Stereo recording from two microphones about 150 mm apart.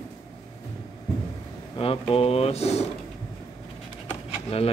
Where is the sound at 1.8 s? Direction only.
40° left (ahead or behind).